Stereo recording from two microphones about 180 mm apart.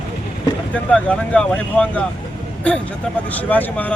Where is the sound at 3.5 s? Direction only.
10° left (ahead or behind).